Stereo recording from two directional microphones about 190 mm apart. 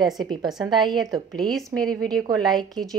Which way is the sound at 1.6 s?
20° right (ahead or behind).